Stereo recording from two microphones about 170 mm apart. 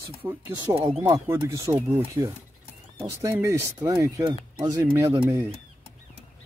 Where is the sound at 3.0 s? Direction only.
15° right (ahead or behind).